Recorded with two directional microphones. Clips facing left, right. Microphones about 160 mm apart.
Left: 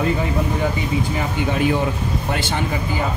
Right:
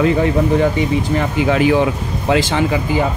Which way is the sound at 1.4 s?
90° right.